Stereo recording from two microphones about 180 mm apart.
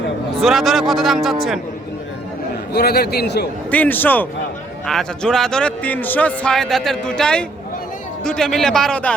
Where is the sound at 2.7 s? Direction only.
60° left (ahead or behind).